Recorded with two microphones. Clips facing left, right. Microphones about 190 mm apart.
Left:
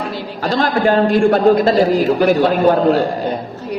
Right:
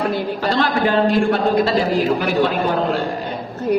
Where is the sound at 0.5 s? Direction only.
45° left (ahead or behind).